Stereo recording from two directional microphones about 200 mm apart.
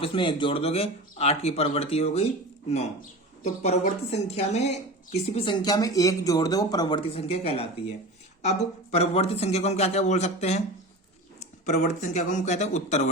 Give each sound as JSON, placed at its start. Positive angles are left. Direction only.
{"t": 0.0, "sound": "a woman's voice", "side_deg": 25}
{"t": 3.4, "sound": "a woman's voice", "side_deg": 35}